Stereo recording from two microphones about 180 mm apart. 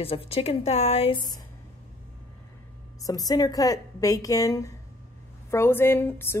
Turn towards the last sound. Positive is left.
turn(degrees=15)  # may be behind; listen again after turning